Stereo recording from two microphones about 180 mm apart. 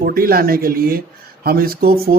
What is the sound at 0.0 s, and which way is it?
A man's voice, 55° right (ahead or behind).